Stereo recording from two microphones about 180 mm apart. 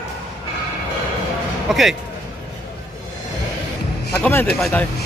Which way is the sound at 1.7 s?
Centre (ahead or behind).